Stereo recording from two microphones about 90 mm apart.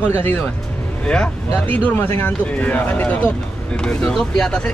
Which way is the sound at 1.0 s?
10° left (ahead or behind).